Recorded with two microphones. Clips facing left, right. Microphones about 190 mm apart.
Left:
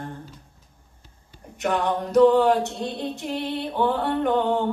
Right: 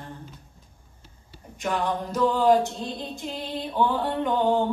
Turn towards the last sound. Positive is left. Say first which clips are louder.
# left 2 dB
turn(degrees=65)  # may be behind; listen again after turning